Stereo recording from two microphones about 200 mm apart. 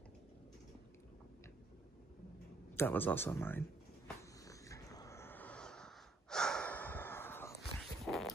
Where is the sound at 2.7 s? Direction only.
10° left (ahead or behind).